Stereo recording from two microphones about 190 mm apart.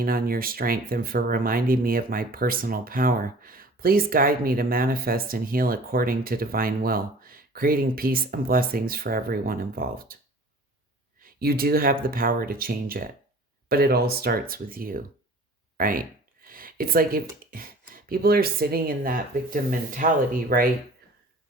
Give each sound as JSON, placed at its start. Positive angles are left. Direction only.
{"t": 0.0, "sound": "speech", "side_deg": -50}
{"t": 11.2, "sound": "speech", "side_deg": -55}